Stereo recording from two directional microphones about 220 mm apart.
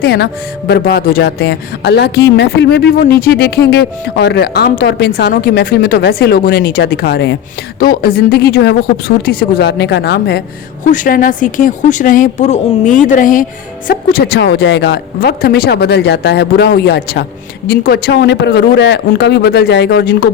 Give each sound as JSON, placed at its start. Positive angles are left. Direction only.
{"t": 0.0, "sound": "speech", "side_deg": 50}